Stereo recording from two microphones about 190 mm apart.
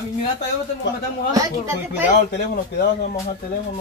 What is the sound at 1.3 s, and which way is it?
Speech, 15° right (ahead or behind).